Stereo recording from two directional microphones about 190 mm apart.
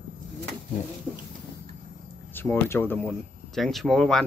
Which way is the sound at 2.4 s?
10° left (ahead or behind).